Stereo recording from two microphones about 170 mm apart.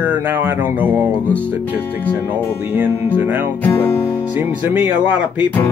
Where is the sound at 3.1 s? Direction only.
10° right (ahead or behind).